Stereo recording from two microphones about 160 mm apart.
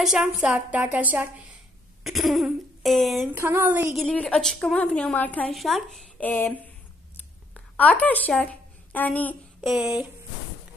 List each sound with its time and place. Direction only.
0.0 s a woman's voice: 5° right (ahead or behind)
2.0 s speech: centre (ahead or behind)
3.3 s a woman's voice: 15° right (ahead or behind)
3.9 s a woman's voice: 5° left (ahead or behind)
5.5 s a woman's voice: centre (ahead or behind)
7.2 s a sound: 10° left (ahead or behind)
9.6 s a woman's voice: 5° right (ahead or behind)